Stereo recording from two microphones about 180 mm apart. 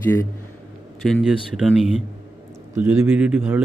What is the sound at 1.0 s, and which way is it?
Speech, centre (ahead or behind).